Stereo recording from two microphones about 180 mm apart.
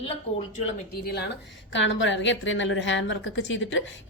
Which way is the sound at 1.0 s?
60° left (ahead or behind).